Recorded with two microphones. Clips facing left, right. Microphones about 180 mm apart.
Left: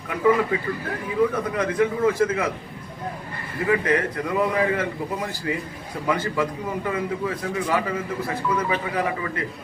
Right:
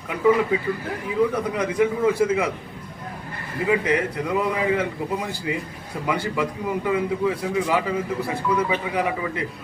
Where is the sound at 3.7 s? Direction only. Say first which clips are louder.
Even; 15° right (ahead or behind).